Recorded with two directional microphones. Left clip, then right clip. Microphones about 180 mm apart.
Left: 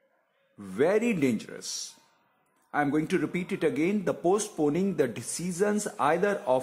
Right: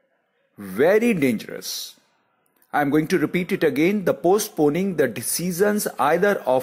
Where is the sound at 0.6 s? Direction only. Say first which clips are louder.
Right 7 dB; 15° right (ahead or behind).